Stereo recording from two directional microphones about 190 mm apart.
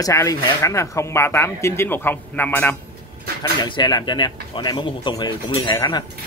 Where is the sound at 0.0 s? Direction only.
15° left (ahead or behind).